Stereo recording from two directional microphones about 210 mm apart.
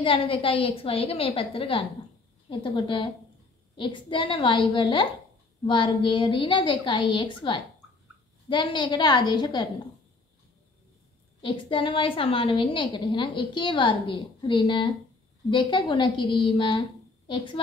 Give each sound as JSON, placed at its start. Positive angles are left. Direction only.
{"t": 0.0, "sound": "a woman's voice", "side_deg": 25}
{"t": 11.4, "sound": "a woman's voice", "side_deg": 25}